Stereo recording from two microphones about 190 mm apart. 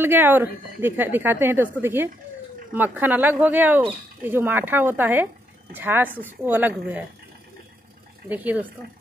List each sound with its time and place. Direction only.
0.0 s speech: 10° right (ahead or behind)
8.3 s speech: 10° right (ahead or behind)